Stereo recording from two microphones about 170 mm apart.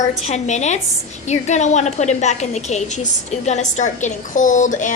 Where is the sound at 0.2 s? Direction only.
40° left (ahead or behind).